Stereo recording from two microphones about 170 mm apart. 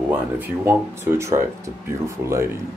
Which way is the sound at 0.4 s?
15° right (ahead or behind).